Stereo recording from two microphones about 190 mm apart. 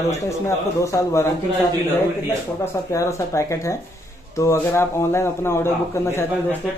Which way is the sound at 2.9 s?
15° left (ahead or behind).